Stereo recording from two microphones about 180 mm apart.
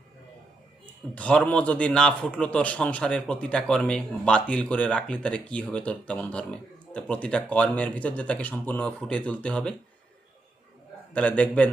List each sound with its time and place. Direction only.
1.1 s a man's voice: 5° left (ahead or behind)
11.1 s a man's voice: 5° left (ahead or behind)